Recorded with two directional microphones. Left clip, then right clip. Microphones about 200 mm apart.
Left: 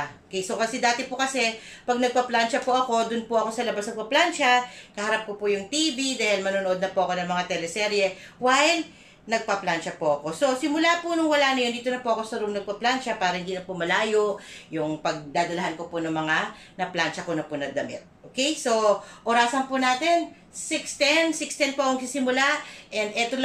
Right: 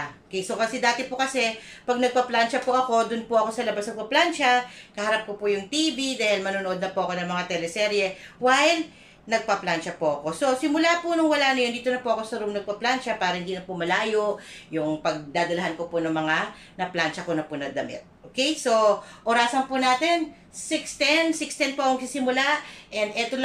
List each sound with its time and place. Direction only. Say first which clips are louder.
0.3 s a woman's voice: right 1 dB; centre (ahead or behind)